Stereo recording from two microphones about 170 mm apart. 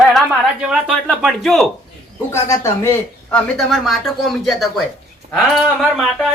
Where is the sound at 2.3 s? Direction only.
15° left (ahead or behind).